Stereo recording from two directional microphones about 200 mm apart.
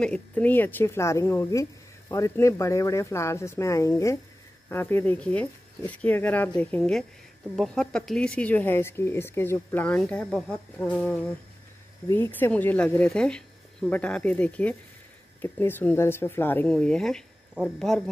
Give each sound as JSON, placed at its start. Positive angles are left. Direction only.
{"t": 0.0, "sound": "speech", "side_deg": 5}